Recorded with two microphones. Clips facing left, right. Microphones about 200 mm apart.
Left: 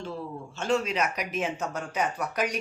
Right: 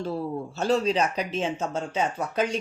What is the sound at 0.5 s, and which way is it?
Speech, 35° right (ahead or behind).